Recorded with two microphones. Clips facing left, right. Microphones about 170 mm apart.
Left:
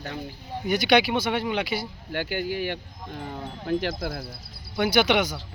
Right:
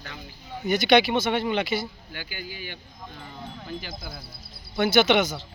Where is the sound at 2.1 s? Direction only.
65° left (ahead or behind).